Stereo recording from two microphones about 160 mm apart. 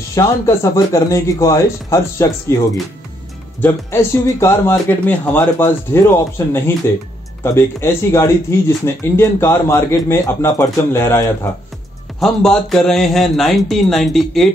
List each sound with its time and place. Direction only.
0.1 s a man's voice: 20° left (ahead or behind)
3.6 s speech: 15° left (ahead or behind)
12.2 s speech: centre (ahead or behind)